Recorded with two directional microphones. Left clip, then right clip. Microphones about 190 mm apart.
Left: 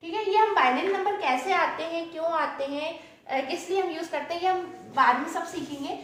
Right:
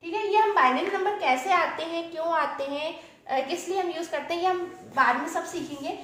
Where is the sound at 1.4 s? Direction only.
40° right (ahead or behind).